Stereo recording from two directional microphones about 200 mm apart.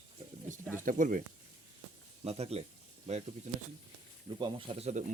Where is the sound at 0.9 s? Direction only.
40° right (ahead or behind).